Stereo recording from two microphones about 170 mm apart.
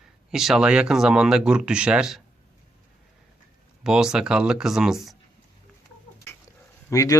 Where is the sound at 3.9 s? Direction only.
5° right (ahead or behind).